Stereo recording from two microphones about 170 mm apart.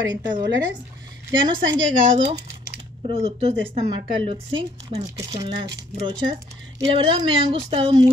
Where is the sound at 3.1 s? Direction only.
35° right (ahead or behind).